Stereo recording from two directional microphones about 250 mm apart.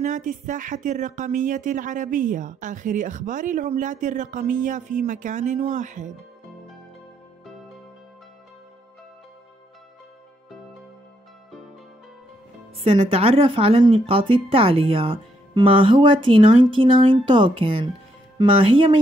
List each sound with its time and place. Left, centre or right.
0.0 s speech: right
12.8 s speech: right